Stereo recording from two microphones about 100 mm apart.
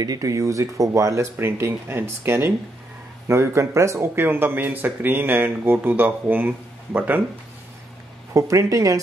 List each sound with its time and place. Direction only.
0.0 s speech: 35° right (ahead or behind); by 7.2 s 20° right (ahead or behind)
8.3 s speech: 30° right (ahead or behind)